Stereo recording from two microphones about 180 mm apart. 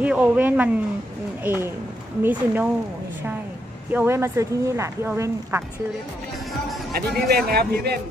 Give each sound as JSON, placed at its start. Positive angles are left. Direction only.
{"t": 0.0, "sound": "speech", "side_deg": -5}
{"t": 3.9, "sound": "speech", "side_deg": -15}
{"t": 6.9, "sound": "a man's voice", "side_deg": -60}